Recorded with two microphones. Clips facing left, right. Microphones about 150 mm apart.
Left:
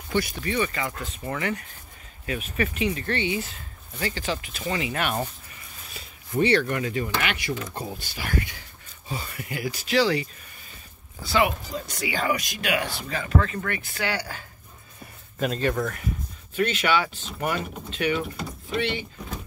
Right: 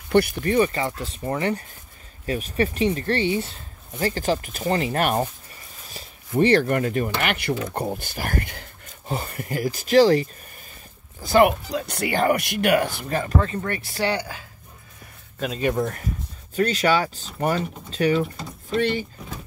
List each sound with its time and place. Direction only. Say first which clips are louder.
0.1 s speech: right 7 dB; 60° right (ahead or behind)
0.5 s speech: right 6 dB; 35° right (ahead or behind)
11.7 s speech: right 5 dB; 60° right (ahead or behind); by 13.4 s 45° right (ahead or behind)
13.7 s speech: right 4 dB; 35° right (ahead or behind)
15.3 s speech: left 2 dB; centre (ahead or behind)
15.6 s speech: right 4 dB; 20° right (ahead or behind)
16.5 s speech: right 3 dB; 40° right (ahead or behind)